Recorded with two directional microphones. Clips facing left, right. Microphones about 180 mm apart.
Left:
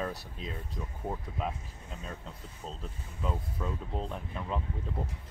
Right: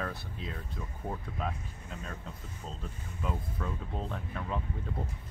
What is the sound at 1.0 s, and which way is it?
Speech, 10° left (ahead or behind).